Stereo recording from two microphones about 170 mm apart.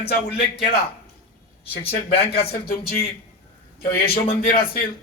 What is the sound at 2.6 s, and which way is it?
A man's voice, 65° left (ahead or behind).